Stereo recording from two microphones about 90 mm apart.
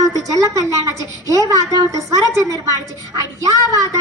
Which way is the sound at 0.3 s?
40° right (ahead or behind).